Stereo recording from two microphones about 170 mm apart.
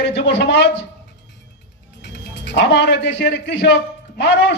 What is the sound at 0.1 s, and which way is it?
Speech, 90° left.